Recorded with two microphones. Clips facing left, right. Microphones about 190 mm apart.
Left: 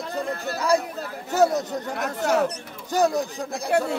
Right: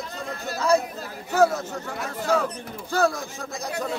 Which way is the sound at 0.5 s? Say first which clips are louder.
Right 1 dB; 15° left (ahead or behind).